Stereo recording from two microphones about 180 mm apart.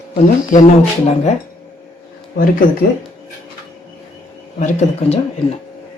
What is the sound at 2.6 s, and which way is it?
Speech, 50° left (ahead or behind).